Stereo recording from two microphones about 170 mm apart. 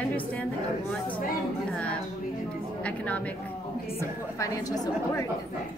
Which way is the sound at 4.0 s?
20° left (ahead or behind).